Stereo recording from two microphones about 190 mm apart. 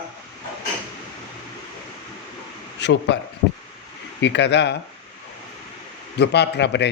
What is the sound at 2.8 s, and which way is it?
Speech, 65° left (ahead or behind).